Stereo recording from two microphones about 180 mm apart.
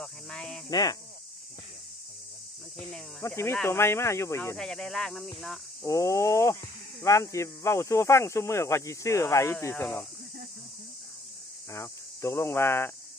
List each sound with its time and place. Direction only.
0.0 s speech: 5° left (ahead or behind)
0.7 s speech: 20° left (ahead or behind)
3.2 s speech: 15° left (ahead or behind)
4.6 s speech: centre (ahead or behind)
5.9 s speech: 15° left (ahead or behind)
11.7 s speech: 15° left (ahead or behind)